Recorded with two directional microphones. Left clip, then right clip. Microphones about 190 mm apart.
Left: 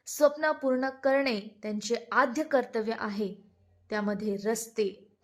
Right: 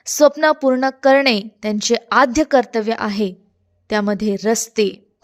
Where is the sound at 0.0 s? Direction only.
40° right (ahead or behind).